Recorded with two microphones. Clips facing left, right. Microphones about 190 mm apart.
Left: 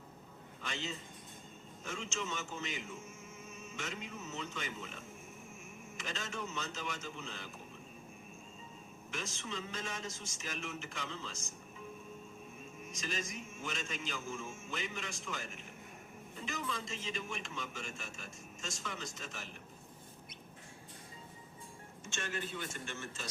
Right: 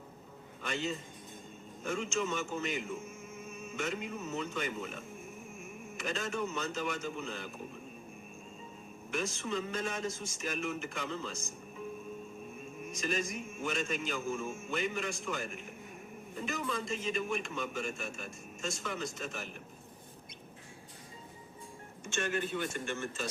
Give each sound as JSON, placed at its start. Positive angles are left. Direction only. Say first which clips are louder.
{"t": 0.6, "sound": "a man's voice", "louder": "right 6 dB", "side_deg": -55}
{"t": 6.0, "sound": "a man's voice", "louder": "right 7 dB", "side_deg": -55}
{"t": 9.1, "sound": "a man's voice", "louder": "right 8 dB", "side_deg": -55}
{"t": 12.9, "sound": "a man's voice", "louder": "right 7 dB", "side_deg": -55}
{"t": 22.0, "sound": "a man's voice", "louder": "right 7 dB", "side_deg": -55}